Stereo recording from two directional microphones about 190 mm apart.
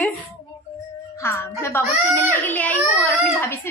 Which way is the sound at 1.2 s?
15° left (ahead or behind).